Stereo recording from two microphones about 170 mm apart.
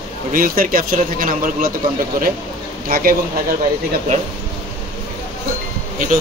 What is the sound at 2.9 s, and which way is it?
Speech, 55° right (ahead or behind).